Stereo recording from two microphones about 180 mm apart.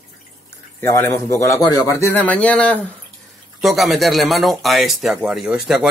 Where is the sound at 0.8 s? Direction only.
15° left (ahead or behind).